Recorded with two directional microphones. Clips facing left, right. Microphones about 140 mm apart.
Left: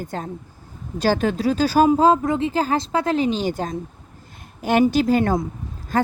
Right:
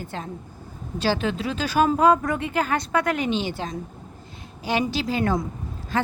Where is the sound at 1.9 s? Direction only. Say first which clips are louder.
Left 2 dB; 25° left (ahead or behind); by 6.1 s 45° left (ahead or behind).